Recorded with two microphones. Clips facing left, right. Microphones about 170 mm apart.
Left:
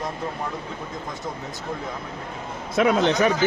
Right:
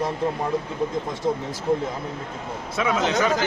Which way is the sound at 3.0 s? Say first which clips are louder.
Left 2 dB; 20° left (ahead or behind).